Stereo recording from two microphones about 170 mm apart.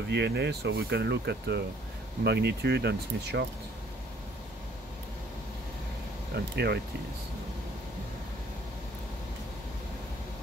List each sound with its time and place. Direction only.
0.1 s speech: 85° right
6.3 s speech: 75° right (ahead or behind)